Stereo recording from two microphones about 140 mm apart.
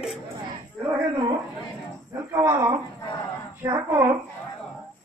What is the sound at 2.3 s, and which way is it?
A man's voice, 25° right (ahead or behind).